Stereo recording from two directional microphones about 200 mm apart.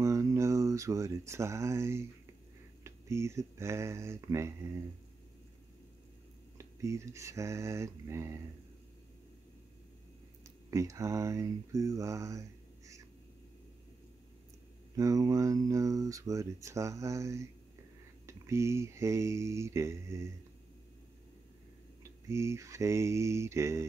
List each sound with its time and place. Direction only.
0.0 s a sound: 15° right (ahead or behind)
2.8 s speech: 15° right (ahead or behind)
6.6 s speech: 15° right (ahead or behind)
10.4 s speech: 15° right (ahead or behind)
15.0 s speech: 15° right (ahead or behind)
22.0 s speech: 15° right (ahead or behind)